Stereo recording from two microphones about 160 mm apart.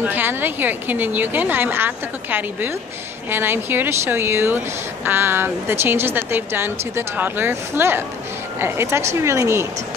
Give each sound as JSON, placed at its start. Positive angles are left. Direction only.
{"t": 0.0, "sound": "a woman's voice", "side_deg": -10}